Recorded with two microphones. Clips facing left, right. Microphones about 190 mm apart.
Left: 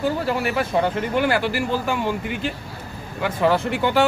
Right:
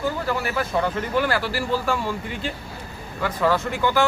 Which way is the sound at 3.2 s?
25° left (ahead or behind).